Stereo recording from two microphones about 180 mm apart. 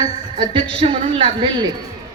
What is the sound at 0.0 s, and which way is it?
A woman's voice, 25° right (ahead or behind).